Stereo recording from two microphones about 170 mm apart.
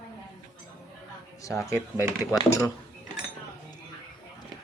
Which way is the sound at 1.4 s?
20° left (ahead or behind).